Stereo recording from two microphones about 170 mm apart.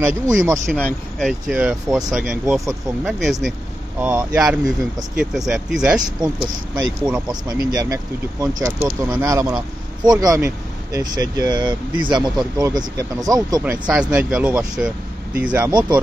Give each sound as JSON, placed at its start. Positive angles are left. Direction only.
{"t": 0.0, "sound": "speech", "side_deg": -15}
{"t": 0.7, "sound": "speech", "side_deg": 5}
{"t": 6.1, "sound": "speech", "side_deg": -25}
{"t": 7.0, "sound": "speech", "side_deg": -5}
{"t": 7.2, "sound": "speech", "side_deg": -20}
{"t": 13.6, "sound": "speech", "side_deg": -5}